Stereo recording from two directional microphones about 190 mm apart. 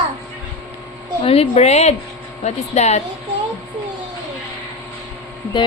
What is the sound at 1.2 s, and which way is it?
A woman's voice, 30° left (ahead or behind).